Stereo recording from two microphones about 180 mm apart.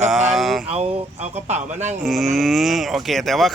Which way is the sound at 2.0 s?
Centre (ahead or behind).